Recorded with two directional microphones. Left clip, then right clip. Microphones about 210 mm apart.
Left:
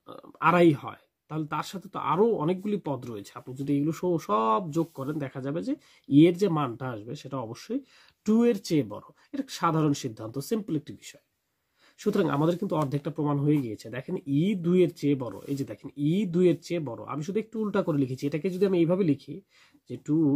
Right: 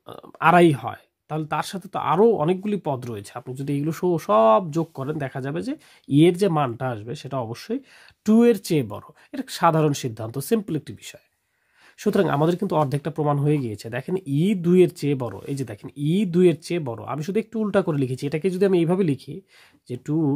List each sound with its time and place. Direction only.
0.0 s speech: 40° right (ahead or behind)